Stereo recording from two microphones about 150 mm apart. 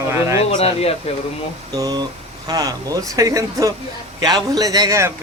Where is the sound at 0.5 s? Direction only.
40° left (ahead or behind).